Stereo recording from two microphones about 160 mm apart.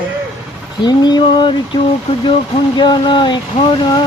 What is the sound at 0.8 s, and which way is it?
Speech, 25° left (ahead or behind).